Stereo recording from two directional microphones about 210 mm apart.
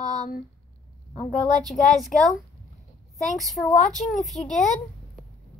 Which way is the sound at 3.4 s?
Centre (ahead or behind).